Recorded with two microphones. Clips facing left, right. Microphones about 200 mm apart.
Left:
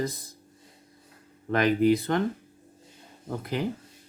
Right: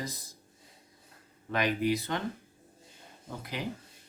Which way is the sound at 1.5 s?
50° left (ahead or behind).